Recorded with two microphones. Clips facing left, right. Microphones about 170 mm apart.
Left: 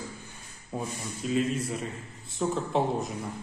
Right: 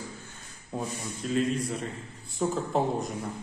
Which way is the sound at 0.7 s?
5° left (ahead or behind).